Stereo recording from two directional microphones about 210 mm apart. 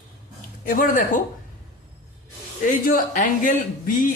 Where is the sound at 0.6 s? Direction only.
40° left (ahead or behind).